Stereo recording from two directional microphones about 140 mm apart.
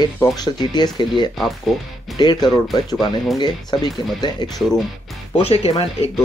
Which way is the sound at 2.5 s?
30° left (ahead or behind).